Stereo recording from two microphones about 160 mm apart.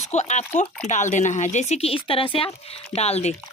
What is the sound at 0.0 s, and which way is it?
Speech, 45° left (ahead or behind).